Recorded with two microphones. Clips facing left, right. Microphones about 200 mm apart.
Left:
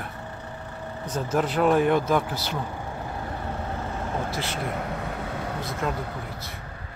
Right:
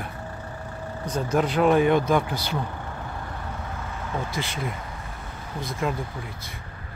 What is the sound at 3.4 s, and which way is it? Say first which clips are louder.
Vehicle: left 4 dB; 30° left (ahead or behind).